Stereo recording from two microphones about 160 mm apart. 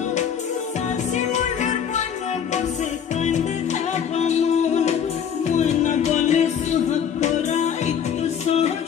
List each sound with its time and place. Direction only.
1.1 s music: 50° left (ahead or behind)
3.2 s music: 45° left (ahead or behind)